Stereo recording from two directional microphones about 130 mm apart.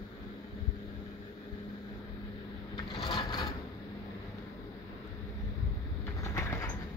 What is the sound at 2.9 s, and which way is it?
Wood, 40° left (ahead or behind).